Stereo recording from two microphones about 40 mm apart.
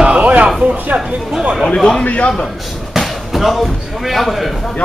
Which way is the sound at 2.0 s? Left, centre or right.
Left.